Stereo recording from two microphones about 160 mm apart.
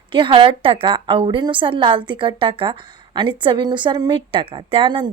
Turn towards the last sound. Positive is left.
turn(degrees=-30)  # may be behind; listen again after turning